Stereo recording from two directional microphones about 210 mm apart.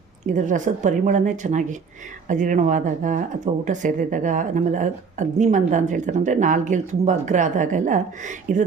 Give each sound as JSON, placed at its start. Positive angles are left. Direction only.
{"t": 0.3, "sound": "speech", "side_deg": -35}